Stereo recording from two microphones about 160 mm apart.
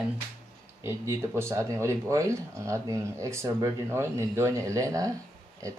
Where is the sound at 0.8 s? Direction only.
15° right (ahead or behind).